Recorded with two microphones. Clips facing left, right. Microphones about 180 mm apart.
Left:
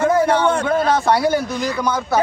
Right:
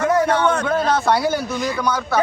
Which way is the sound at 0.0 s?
25° left (ahead or behind).